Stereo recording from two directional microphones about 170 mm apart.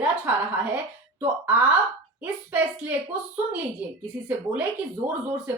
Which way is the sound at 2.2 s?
10° right (ahead or behind).